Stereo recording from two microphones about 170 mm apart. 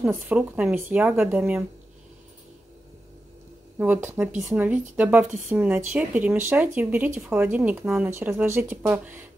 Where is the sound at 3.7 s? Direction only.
10° right (ahead or behind).